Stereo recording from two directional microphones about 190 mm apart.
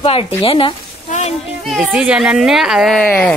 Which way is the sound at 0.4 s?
25° left (ahead or behind).